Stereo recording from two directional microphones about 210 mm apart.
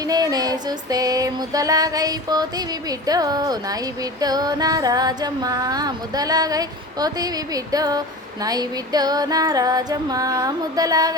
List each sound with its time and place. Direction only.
0.0 s music: 20° right (ahead or behind)